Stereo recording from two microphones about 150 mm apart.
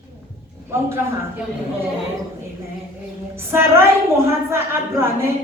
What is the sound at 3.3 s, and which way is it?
A woman's voice, 15° right (ahead or behind).